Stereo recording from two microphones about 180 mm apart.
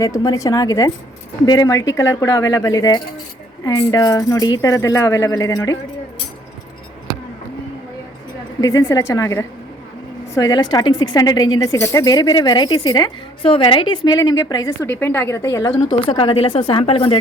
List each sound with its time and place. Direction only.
0.0 s a woman's voice: 20° left (ahead or behind)
8.6 s a woman's voice: 15° left (ahead or behind)